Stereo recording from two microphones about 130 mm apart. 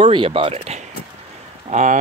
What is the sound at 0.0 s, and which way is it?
Speech, 40° right (ahead or behind).